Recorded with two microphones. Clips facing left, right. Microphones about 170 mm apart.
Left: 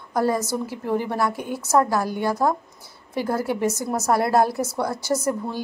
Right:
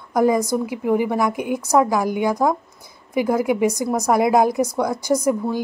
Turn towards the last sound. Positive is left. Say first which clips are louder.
# right 4 dB
turn(degrees=-15)  # may be behind; listen again after turning